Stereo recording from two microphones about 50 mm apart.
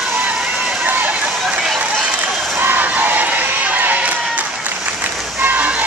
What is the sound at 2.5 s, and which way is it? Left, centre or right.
Crowd, right.